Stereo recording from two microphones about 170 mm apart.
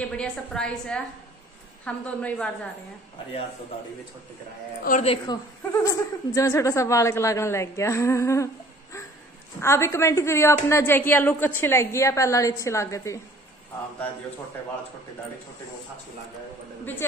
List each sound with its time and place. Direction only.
0.2 s a woman's voice: 5° left (ahead or behind)
5.0 s a woman's voice: 30° left (ahead or behind)
9.6 s a woman's voice: 15° left (ahead or behind)